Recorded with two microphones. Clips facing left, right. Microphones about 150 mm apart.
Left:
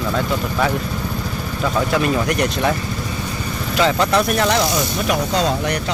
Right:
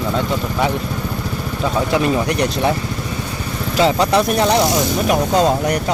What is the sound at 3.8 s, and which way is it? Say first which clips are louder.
Speech: right 2 dB; 30° right (ahead or behind).